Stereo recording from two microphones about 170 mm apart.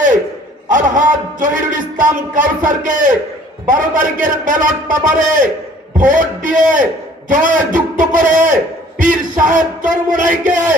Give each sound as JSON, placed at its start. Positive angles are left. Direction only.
{"t": 0.7, "sound": "speech", "side_deg": -50}